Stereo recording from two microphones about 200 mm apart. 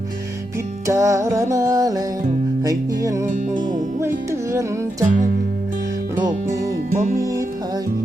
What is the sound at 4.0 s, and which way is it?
Music, 15° right (ahead or behind).